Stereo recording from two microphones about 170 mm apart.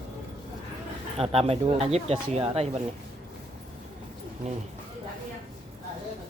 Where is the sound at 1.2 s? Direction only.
35° right (ahead or behind).